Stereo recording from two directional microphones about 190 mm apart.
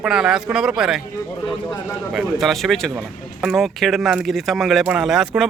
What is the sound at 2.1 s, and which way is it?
Speech, centre (ahead or behind).